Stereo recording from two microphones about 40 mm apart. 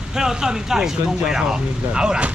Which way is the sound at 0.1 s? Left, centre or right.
Centre.